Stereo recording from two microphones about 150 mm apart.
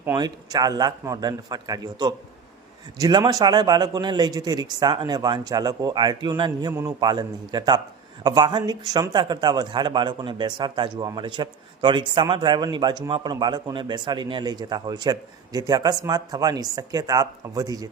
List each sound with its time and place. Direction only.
0.2 s speech: 25° right (ahead or behind)